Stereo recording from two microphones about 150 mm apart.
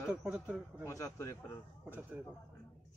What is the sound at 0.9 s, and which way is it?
Speech, 20° left (ahead or behind).